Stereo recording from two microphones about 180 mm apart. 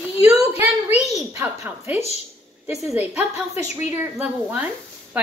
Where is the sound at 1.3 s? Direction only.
10° right (ahead or behind).